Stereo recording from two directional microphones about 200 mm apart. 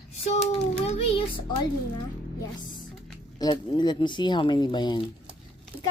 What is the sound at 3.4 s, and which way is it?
Speech, 20° left (ahead or behind).